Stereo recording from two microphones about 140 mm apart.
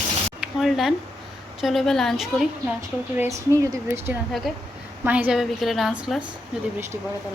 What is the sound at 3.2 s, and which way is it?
A woman's voice, 20° right (ahead or behind).